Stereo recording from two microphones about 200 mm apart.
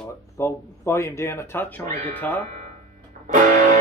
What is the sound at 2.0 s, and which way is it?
Speech, 10° left (ahead or behind).